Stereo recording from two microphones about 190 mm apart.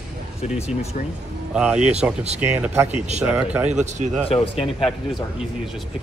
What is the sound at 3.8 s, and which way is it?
Speech, 40° right (ahead or behind).